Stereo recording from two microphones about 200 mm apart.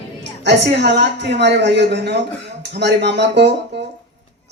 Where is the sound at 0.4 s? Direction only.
60° right (ahead or behind).